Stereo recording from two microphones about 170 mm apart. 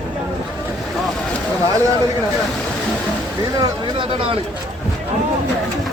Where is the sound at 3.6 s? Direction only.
30° right (ahead or behind).